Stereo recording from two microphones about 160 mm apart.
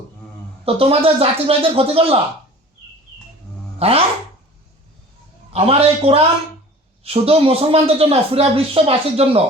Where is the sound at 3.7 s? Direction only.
40° right (ahead or behind).